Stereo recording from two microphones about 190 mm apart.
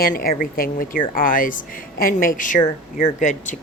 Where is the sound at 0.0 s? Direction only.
50° left (ahead or behind).